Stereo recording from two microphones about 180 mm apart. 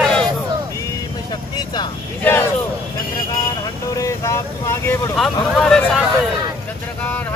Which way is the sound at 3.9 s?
15° left (ahead or behind).